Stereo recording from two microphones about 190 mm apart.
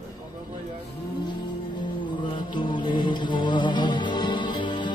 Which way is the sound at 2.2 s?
25° left (ahead or behind).